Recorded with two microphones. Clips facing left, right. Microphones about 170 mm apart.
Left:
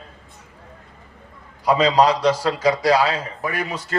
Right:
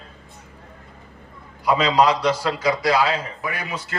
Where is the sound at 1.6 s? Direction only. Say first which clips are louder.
Left 2 dB; 35° left (ahead or behind).